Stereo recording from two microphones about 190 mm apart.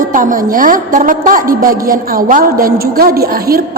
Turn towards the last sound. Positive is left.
turn(degrees=-50)  # may be behind; listen again after turning